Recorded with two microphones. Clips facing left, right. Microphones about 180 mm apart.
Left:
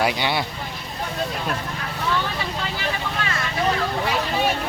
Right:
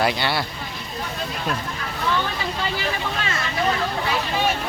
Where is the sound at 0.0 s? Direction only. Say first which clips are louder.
Even; 10° left (ahead or behind).